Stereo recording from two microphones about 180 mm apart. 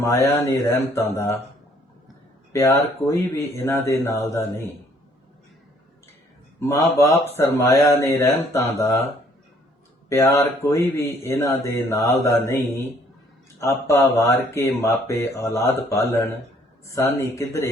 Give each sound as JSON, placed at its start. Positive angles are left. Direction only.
{"t": 0.0, "sound": "speech", "side_deg": 15}
{"t": 2.5, "sound": "speech", "side_deg": 15}
{"t": 6.6, "sound": "speech", "side_deg": 15}
{"t": 10.3, "sound": "speech", "side_deg": 15}